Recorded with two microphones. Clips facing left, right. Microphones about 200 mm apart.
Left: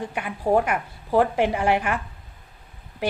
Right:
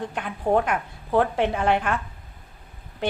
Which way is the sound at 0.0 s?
10° left (ahead or behind).